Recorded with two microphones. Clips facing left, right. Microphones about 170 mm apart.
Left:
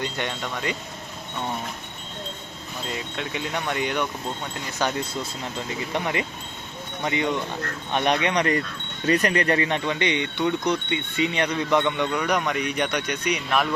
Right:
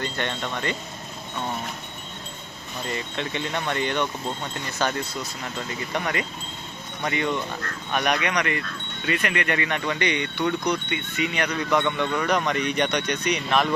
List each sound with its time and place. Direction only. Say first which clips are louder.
0.0 s speech: even; 10° left (ahead or behind)
2.8 s speech: right 2 dB; 5° left (ahead or behind)